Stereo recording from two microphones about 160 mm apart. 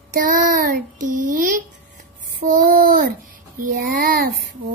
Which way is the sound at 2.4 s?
55° right (ahead or behind).